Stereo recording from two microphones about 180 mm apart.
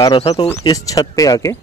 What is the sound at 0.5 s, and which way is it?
Speech, 20° left (ahead or behind).